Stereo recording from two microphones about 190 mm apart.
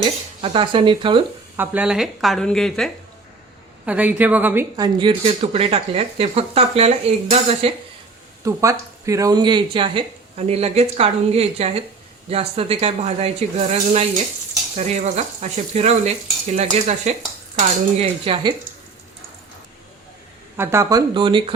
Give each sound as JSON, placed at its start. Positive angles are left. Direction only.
{"t": 0.0, "sound": "speech", "side_deg": -30}
{"t": 1.5, "sound": "speech", "side_deg": -10}
{"t": 3.8, "sound": "a woman's voice", "side_deg": -10}
{"t": 4.8, "sound": "speech", "side_deg": -25}
{"t": 8.4, "sound": "a woman's voice", "side_deg": -15}
{"t": 20.6, "sound": "a woman's voice", "side_deg": -15}
{"t": 21.1, "sound": "speech", "side_deg": -25}